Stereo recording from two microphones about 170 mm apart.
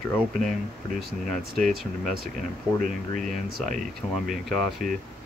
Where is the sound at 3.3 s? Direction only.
50° right (ahead or behind).